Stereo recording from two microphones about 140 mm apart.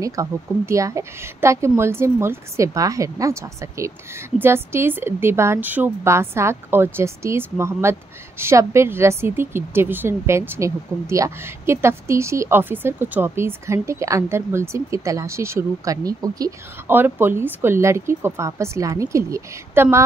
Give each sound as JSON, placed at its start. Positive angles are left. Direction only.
{"t": 0.0, "sound": "a woman's voice", "side_deg": -20}